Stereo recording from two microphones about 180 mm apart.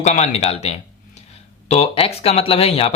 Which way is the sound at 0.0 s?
40° left (ahead or behind).